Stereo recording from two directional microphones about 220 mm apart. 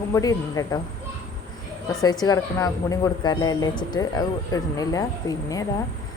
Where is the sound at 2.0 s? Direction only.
15° left (ahead or behind).